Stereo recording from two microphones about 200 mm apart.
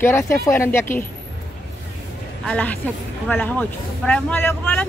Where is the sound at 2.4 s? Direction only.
5° left (ahead or behind).